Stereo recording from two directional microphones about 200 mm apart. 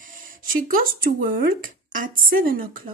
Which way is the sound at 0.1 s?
45° right (ahead or behind).